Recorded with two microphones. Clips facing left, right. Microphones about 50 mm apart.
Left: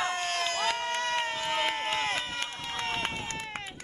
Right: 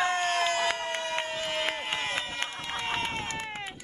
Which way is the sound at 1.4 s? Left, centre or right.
Centre.